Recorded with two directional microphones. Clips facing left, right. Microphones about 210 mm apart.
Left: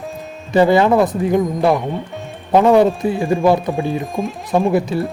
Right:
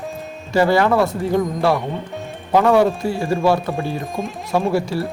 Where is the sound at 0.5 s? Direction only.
20° left (ahead or behind).